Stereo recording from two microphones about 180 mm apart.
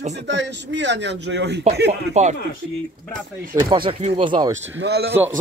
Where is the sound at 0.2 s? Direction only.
75° right (ahead or behind).